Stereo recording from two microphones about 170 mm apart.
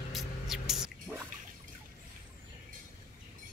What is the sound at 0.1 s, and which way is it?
Music, centre (ahead or behind).